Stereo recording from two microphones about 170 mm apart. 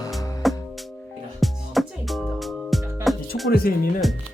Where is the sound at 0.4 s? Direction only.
Centre (ahead or behind).